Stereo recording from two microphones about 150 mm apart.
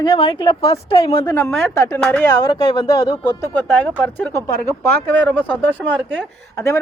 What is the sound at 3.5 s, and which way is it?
Speech, 5° left (ahead or behind).